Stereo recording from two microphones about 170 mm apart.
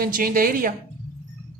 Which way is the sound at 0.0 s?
60° right (ahead or behind).